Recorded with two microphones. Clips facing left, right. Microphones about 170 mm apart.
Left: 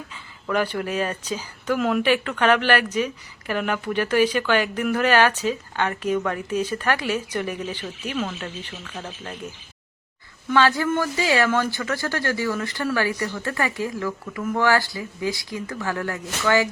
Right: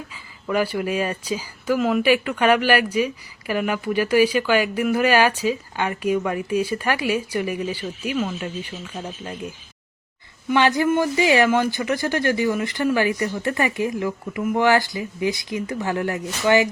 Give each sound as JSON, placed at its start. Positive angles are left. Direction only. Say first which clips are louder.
{"t": 0.4, "sound": "speech", "louder": "right 2 dB", "side_deg": -10}
{"t": 10.5, "sound": "speech", "louder": "right 2 dB", "side_deg": -20}